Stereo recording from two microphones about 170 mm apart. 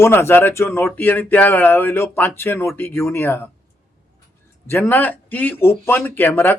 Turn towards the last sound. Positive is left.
turn(degrees=10)  # may be behind; listen again after turning